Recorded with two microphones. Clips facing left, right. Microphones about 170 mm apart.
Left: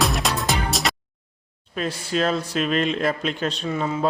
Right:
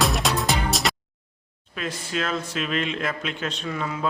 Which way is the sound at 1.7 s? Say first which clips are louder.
Left 4 dB; 35° left (ahead or behind).